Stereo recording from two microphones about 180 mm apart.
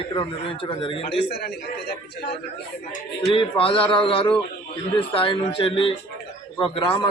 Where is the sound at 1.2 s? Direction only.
65° left (ahead or behind).